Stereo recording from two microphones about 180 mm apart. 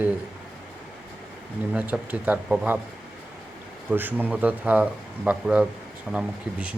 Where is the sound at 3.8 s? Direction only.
10° right (ahead or behind).